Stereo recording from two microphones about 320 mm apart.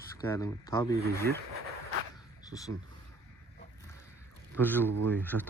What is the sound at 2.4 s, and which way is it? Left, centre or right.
Speech, centre.